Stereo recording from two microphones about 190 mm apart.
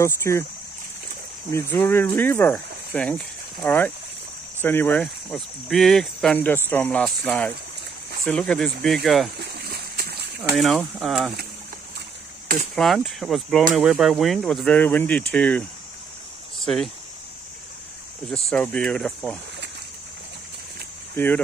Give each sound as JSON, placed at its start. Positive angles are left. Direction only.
{"t": 0.0, "sound": "speech", "side_deg": 15}
{"t": 1.5, "sound": "speech", "side_deg": 10}
{"t": 9.4, "sound": "splash", "side_deg": -55}
{"t": 10.5, "sound": "speech", "side_deg": 0}
{"t": 12.7, "sound": "speech", "side_deg": 0}
{"t": 18.5, "sound": "speech", "side_deg": 5}